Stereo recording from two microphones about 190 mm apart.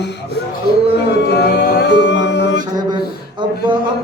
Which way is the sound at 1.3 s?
60° left (ahead or behind).